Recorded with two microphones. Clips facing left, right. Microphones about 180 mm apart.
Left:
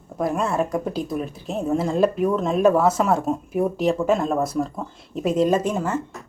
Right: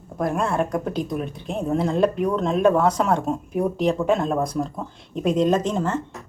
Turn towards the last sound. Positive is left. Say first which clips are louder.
# even
turn(degrees=10)  # may be behind; listen again after turning